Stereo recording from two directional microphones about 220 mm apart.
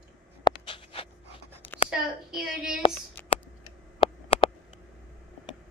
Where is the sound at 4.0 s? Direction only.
25° left (ahead or behind).